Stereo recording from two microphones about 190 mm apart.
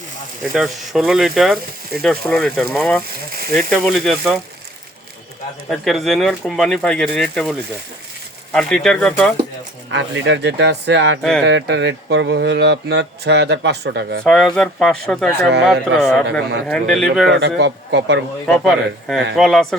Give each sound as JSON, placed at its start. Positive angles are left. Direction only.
{"t": 0.5, "sound": "speech", "side_deg": 0}
{"t": 5.6, "sound": "speech", "side_deg": 0}
{"t": 8.5, "sound": "speech", "side_deg": 0}
{"t": 9.9, "sound": "speech", "side_deg": -70}
{"t": 14.3, "sound": "speech", "side_deg": 0}
{"t": 15.4, "sound": "speech", "side_deg": -60}
{"t": 15.6, "sound": "speech", "side_deg": 0}
{"t": 17.6, "sound": "speech", "side_deg": -65}
{"t": 18.4, "sound": "speech", "side_deg": 0}